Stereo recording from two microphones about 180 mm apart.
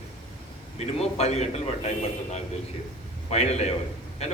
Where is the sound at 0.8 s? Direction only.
35° left (ahead or behind).